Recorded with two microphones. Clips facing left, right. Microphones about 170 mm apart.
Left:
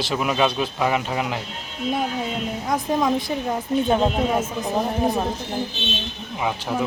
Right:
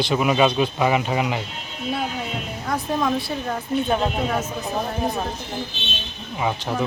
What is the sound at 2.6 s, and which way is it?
Speech, 20° left (ahead or behind).